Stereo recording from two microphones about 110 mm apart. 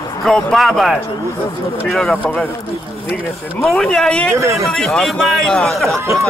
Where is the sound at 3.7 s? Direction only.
5° left (ahead or behind).